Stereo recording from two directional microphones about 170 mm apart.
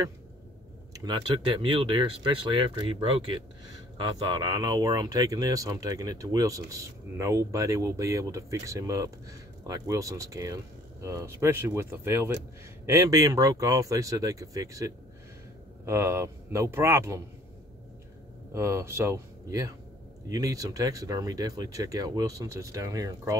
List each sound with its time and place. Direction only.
0.9 s speech: 25° right (ahead or behind)
18.5 s speech: 15° right (ahead or behind)